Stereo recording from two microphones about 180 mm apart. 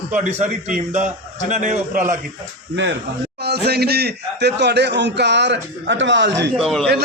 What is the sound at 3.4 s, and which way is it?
A man's voice, 65° right (ahead or behind).